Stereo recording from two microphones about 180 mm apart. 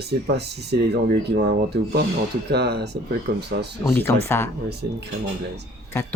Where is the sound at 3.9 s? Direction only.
10° left (ahead or behind).